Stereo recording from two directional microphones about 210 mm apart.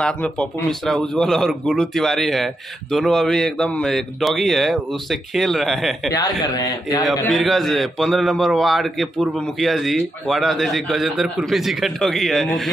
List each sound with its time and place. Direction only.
0.0 s a man's voice: 5° left (ahead or behind)
6.1 s a man's voice: 20° left (ahead or behind)
7.1 s a man's voice: centre (ahead or behind)